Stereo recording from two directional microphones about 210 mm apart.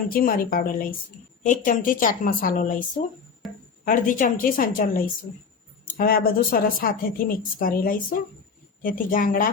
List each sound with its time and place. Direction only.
0.1 s a woman's voice: 45° left (ahead or behind)
3.4 s speech: centre (ahead or behind)
3.8 s a woman's voice: 40° left (ahead or behind)